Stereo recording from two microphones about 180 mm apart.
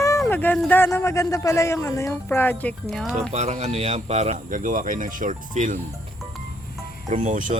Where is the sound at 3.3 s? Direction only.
40° right (ahead or behind).